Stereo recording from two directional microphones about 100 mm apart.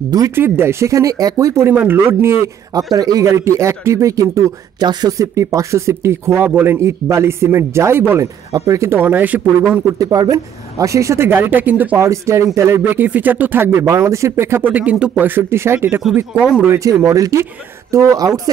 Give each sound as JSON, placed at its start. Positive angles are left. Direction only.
{"t": 0.4, "sound": "speech", "side_deg": -25}
{"t": 1.7, "sound": "speech", "side_deg": -20}
{"t": 8.5, "sound": "speech", "side_deg": -35}
{"t": 9.9, "sound": "speech", "side_deg": -35}
{"t": 12.0, "sound": "speech", "side_deg": -30}